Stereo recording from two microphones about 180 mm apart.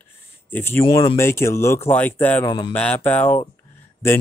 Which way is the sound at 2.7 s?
5° left (ahead or behind).